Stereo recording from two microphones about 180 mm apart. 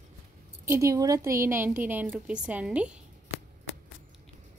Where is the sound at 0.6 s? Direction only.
15° right (ahead or behind).